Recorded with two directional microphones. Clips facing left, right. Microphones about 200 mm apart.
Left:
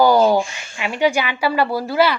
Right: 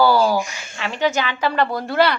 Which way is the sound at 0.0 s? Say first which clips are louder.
Left 3 dB; 20° left (ahead or behind).